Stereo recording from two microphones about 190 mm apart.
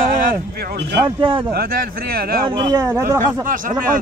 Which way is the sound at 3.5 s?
45° right (ahead or behind).